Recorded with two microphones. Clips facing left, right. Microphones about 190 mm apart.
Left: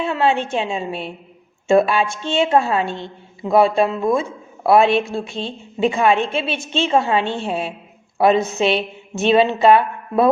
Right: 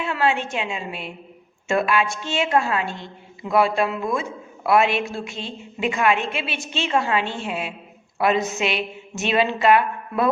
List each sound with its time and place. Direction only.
0.0 s a woman's voice: 25° left (ahead or behind)